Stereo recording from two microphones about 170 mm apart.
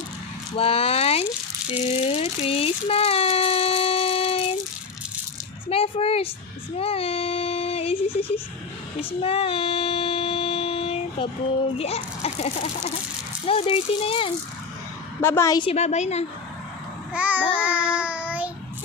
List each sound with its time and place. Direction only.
0.5 s speech: 35° left (ahead or behind)
1.8 s a sound: 35° left (ahead or behind)
5.6 s a child's voice: 35° left (ahead or behind)
6.7 s child singing: 35° left (ahead or behind)
9.2 s child singing: 35° left (ahead or behind)
11.8 s a child's voice: 35° left (ahead or behind)
15.2 s a woman's voice: 15° left (ahead or behind)
15.6 s speech: 40° left (ahead or behind)
17.2 s child singing: 10° right (ahead or behind)